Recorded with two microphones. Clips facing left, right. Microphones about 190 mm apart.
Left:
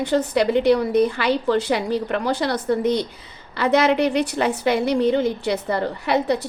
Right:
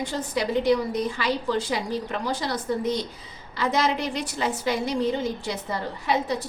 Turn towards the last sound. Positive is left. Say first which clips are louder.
# left 5 dB
turn(degrees=65)  # may be behind; listen again after turning